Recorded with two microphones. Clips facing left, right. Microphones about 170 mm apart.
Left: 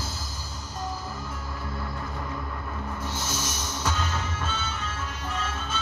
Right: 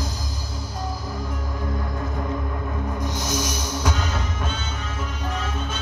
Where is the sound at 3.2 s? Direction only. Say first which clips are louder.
Right 6 dB; 15° right (ahead or behind).